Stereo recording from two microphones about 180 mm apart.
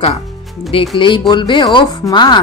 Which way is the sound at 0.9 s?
30° left (ahead or behind).